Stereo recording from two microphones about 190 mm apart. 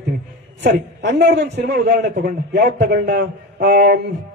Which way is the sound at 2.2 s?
55° right (ahead or behind).